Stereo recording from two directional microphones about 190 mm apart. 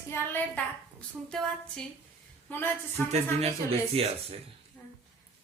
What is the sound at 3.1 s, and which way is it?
Speech, 30° right (ahead or behind).